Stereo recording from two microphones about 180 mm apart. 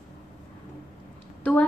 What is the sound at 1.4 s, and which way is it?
Speech, 10° left (ahead or behind).